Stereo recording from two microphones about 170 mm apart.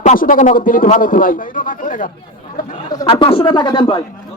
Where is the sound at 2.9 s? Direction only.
30° left (ahead or behind).